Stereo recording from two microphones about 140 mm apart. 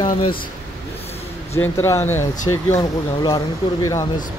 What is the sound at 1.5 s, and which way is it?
Speech, 20° left (ahead or behind).